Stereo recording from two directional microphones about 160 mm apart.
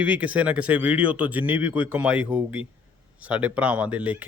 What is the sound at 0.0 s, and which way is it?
Speech, 10° right (ahead or behind).